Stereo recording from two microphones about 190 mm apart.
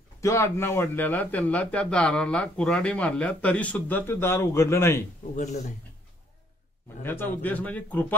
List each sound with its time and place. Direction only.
0.2 s speech: 15° left (ahead or behind)
5.3 s speech: 40° left (ahead or behind)
7.0 s speech: 10° left (ahead or behind)